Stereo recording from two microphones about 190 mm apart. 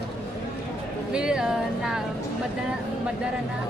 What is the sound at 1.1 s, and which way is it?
Speech, 5° right (ahead or behind).